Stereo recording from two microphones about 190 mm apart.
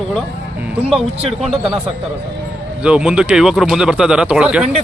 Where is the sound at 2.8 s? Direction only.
5° right (ahead or behind).